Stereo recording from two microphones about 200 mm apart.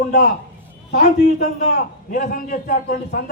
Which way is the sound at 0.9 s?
35° left (ahead or behind).